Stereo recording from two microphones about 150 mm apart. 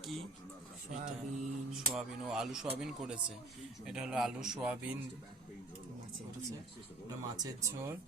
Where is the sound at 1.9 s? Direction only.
5° right (ahead or behind).